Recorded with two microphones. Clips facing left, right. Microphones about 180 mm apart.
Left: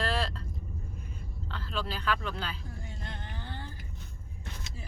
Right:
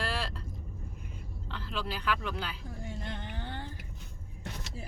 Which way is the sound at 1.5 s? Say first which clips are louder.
Left 1 dB; 15° right (ahead or behind).